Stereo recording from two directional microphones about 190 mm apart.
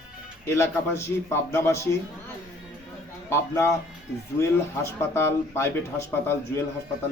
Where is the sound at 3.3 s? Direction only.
15° left (ahead or behind).